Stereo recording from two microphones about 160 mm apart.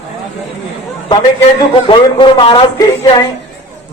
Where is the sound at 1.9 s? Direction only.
30° left (ahead or behind).